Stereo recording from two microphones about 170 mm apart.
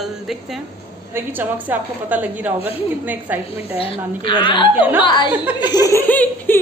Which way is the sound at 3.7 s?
30° left (ahead or behind).